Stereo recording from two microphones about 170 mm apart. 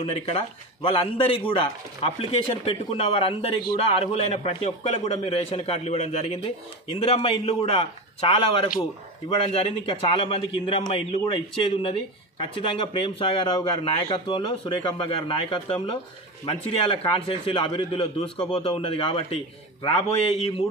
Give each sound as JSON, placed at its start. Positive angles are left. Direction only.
{"t": 0.0, "sound": "speech", "side_deg": 35}